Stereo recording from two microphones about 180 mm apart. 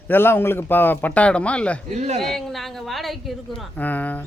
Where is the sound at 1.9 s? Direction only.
40° right (ahead or behind).